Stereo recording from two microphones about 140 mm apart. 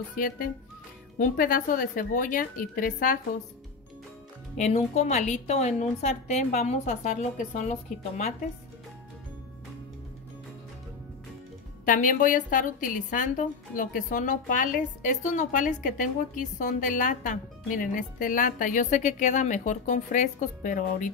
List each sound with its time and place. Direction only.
0.2 s speech: 90° left
1.1 s a woman's voice: 80° left
4.6 s a woman's voice: 55° left (ahead or behind)
11.8 s a woman's voice: 70° left (ahead or behind)